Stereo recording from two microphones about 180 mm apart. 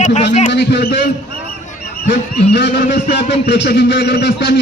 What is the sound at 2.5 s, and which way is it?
A man's voice, 70° left (ahead or behind).